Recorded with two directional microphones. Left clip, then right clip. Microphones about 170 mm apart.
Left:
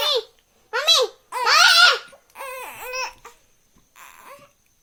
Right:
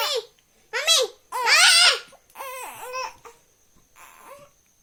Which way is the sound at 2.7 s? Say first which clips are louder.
Left 4 dB; 35° left (ahead or behind).